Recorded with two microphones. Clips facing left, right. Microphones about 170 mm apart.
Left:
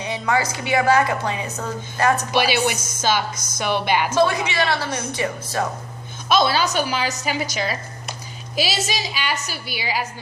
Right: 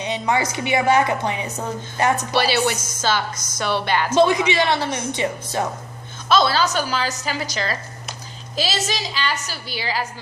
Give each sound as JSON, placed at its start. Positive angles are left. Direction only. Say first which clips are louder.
{"t": 0.0, "sound": "a woman's voice", "louder": "right 1 dB", "side_deg": -20}
{"t": 2.3, "sound": "speech", "louder": "even", "side_deg": 15}
{"t": 4.1, "sound": "a woman's voice", "louder": "right 7 dB", "side_deg": -20}
{"t": 6.2, "sound": "speech", "louder": "right 1 dB", "side_deg": 15}